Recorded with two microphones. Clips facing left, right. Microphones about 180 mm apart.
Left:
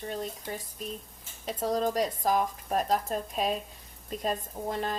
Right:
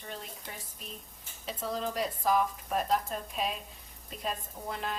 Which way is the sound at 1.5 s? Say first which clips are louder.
Left 6 dB; 40° left (ahead or behind).